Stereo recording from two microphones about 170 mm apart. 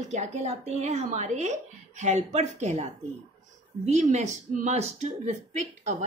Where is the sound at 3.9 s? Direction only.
45° right (ahead or behind).